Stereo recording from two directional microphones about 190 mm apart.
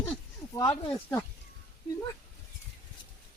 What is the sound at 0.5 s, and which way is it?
Speech, 25° left (ahead or behind).